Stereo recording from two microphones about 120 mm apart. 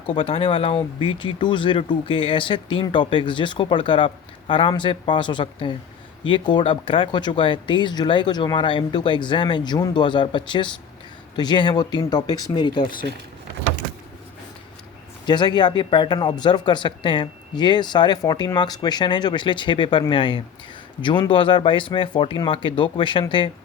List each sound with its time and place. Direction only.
0.1 s speech: 50° left (ahead or behind)
15.3 s speech: 35° left (ahead or behind)